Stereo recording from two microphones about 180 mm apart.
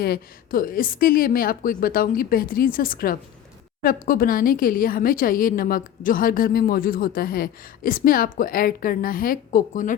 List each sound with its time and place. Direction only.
0.0 s speech: 55° left (ahead or behind)